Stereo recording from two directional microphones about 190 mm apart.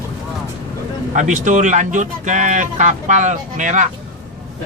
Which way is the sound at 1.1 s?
40° right (ahead or behind).